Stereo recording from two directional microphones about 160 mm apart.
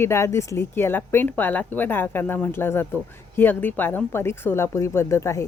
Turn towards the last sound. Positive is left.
turn(degrees=20)  # may be behind; listen again after turning